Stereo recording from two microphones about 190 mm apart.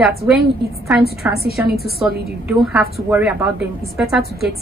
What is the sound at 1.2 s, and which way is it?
Speech, 10° right (ahead or behind).